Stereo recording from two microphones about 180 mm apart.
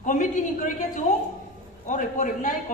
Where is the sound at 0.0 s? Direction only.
45° left (ahead or behind).